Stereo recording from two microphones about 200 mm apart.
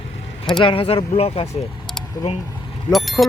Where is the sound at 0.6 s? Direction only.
25° left (ahead or behind).